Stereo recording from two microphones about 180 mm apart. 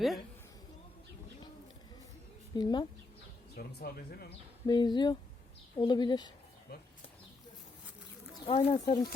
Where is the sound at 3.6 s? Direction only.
60° left (ahead or behind).